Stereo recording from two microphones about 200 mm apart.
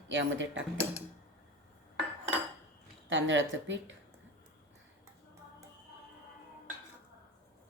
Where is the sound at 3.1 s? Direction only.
70° right (ahead or behind).